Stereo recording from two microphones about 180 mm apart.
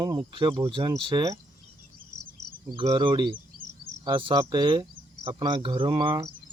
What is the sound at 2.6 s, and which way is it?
Speech, 20° right (ahead or behind).